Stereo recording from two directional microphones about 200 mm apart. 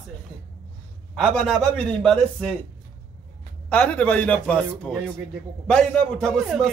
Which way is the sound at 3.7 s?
5° left (ahead or behind).